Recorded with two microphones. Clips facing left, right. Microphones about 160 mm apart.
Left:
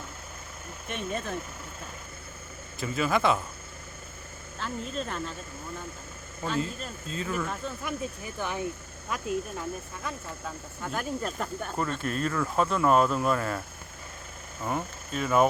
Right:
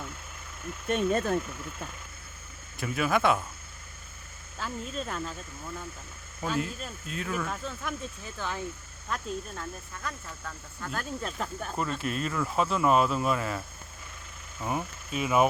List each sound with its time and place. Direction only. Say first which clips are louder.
0.9 s speech: right 7 dB; 45° right (ahead or behind)
2.8 s speech: even; 5° right (ahead or behind)
4.6 s speech: left 1 dB; 5° right (ahead or behind)
6.4 s speech: left 1 dB; 5° right (ahead or behind)
8.2 s speech: left 3 dB; 15° left (ahead or behind); by 11.9 s 5° right (ahead or behind)
12.0 s speech: left 2 dB; 45° left (ahead or behind)
12.3 s speech: left 1 dB; 5° right (ahead or behind)
14.6 s speech: left 1 dB; 5° right (ahead or behind)